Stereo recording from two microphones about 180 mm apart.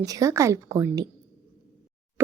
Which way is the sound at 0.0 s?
20° right (ahead or behind).